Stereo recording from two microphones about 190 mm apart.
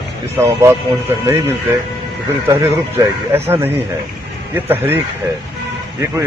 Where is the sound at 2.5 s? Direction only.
15° right (ahead or behind).